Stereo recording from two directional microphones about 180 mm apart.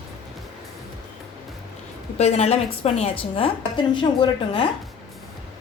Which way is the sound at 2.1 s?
35° left (ahead or behind).